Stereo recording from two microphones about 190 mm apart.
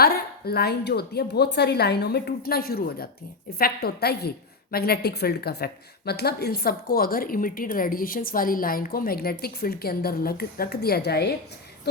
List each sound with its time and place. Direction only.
0.0 s a woman's voice: 55° left (ahead or behind)